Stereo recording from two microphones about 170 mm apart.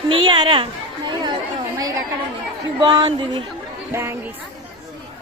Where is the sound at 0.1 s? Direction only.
30° right (ahead or behind).